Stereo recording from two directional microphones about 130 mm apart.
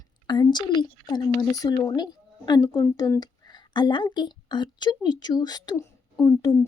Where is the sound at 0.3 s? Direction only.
35° left (ahead or behind).